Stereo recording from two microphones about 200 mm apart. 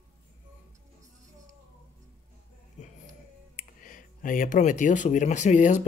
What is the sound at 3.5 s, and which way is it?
Speech, 40° left (ahead or behind).